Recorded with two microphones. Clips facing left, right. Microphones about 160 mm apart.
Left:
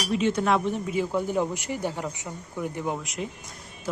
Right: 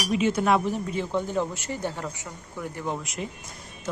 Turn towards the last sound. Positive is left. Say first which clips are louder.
# left 1 dB
turn(degrees=0)  # may be behind; listen again after turning